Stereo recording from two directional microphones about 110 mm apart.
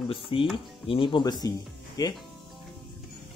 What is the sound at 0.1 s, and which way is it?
Speech, 55° left (ahead or behind).